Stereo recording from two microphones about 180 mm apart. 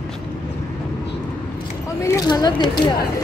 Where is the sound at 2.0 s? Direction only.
20° left (ahead or behind).